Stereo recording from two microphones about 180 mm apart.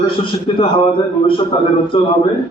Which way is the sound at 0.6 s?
30° left (ahead or behind).